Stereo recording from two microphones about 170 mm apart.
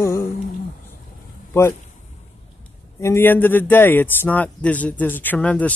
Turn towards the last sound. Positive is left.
turn(degrees=10)  # may be behind; listen again after turning